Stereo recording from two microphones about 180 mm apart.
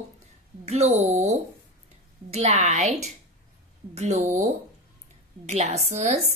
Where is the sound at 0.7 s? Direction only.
35° right (ahead or behind).